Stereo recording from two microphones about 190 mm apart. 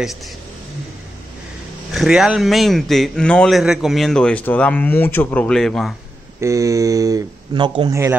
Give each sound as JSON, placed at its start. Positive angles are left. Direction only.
{"t": 2.0, "sound": "a man's voice", "side_deg": -5}
{"t": 6.4, "sound": "speech", "side_deg": -15}